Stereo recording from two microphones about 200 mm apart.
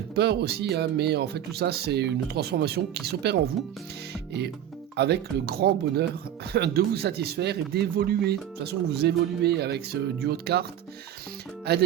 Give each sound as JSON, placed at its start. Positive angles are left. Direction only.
{"t": 0.2, "sound": "speech", "side_deg": -55}
{"t": 4.1, "sound": "music", "side_deg": -55}
{"t": 4.9, "sound": "speech", "side_deg": -55}